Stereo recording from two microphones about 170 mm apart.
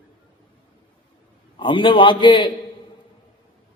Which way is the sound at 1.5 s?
30° left (ahead or behind).